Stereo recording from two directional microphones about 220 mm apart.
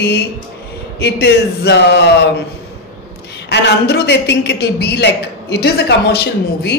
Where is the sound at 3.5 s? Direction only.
50° left (ahead or behind).